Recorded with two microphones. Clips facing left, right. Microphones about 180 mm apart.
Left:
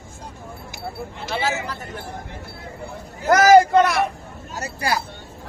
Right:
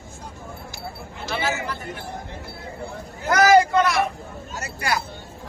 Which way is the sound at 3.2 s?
40° left (ahead or behind).